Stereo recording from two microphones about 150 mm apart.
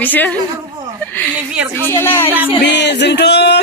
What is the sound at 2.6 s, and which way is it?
Speech, 90° left.